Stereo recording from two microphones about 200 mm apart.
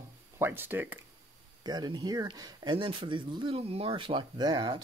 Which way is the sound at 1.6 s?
20° right (ahead or behind).